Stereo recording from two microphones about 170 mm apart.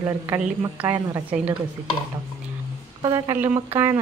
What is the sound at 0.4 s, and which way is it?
A woman's voice, 10° right (ahead or behind).